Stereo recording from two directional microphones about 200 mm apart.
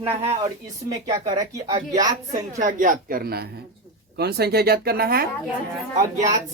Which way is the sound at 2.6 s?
40° right (ahead or behind).